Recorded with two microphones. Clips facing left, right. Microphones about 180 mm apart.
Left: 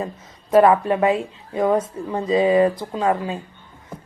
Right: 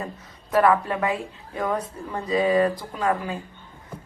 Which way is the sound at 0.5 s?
25° left (ahead or behind).